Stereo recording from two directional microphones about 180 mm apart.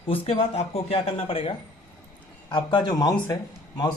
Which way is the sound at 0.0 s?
30° left (ahead or behind).